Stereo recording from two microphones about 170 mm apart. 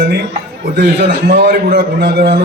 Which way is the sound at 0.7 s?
65° right (ahead or behind).